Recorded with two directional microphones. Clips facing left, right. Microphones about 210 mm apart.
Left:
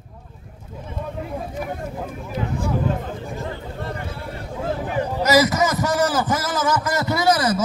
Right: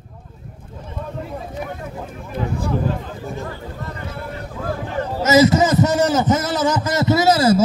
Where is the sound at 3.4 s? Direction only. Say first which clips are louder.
Left 1 dB; 30° left (ahead or behind).